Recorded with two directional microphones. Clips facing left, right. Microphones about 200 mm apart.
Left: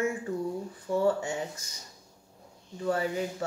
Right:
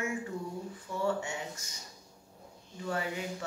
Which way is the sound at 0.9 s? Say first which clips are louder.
Left 9 dB; 50° left (ahead or behind).